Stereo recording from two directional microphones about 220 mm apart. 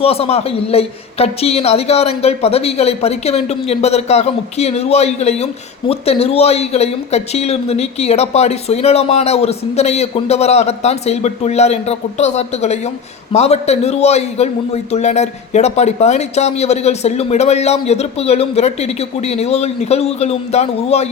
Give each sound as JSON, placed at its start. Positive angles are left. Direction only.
{"t": 0.0, "sound": "a man's voice", "side_deg": 25}